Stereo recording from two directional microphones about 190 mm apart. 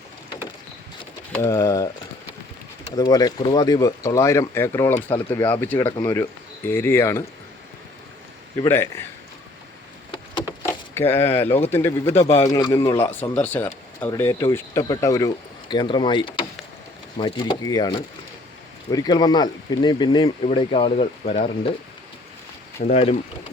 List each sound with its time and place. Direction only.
1.3 s speech: 15° left (ahead or behind)
2.9 s speech: 20° left (ahead or behind)
8.6 s speech: 10° left (ahead or behind)
10.1 s a sound: 25° left (ahead or behind)
10.9 s speech: 10° left (ahead or behind); by 21.7 s 30° left (ahead or behind)
22.8 s speech: 35° left (ahead or behind)